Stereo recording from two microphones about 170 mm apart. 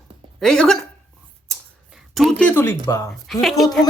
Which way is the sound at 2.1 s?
Centre (ahead or behind).